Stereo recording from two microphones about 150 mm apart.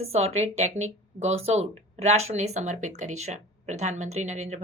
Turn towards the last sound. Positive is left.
turn(degrees=-50)  # may be behind; listen again after turning